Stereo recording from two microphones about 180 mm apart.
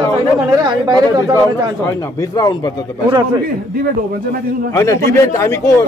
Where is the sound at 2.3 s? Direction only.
20° left (ahead or behind).